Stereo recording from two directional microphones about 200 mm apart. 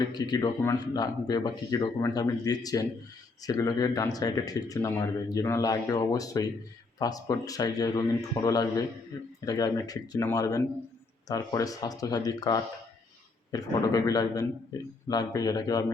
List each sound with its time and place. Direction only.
0.1 s speech: 20° left (ahead or behind)